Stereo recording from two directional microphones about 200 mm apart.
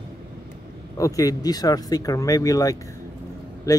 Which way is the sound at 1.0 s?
15° left (ahead or behind).